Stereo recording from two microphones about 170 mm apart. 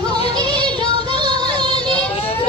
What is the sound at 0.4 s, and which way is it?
Music, 25° right (ahead or behind).